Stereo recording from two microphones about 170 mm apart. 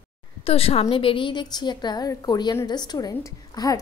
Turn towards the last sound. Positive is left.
turn(degrees=20)  # may be behind; listen again after turning